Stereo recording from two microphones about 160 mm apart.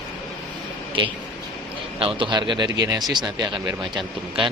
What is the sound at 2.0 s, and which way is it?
Speech, 30° right (ahead or behind).